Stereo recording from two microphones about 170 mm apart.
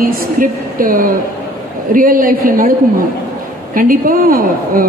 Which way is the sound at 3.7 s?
60° right (ahead or behind).